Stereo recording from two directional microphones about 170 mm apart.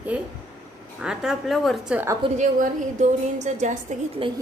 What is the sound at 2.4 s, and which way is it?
A woman's voice, 45° right (ahead or behind).